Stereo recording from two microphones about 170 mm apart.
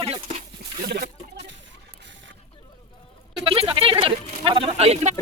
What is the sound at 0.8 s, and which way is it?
Speech, 65° right (ahead or behind).